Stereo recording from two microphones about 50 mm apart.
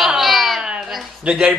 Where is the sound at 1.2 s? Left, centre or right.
Centre.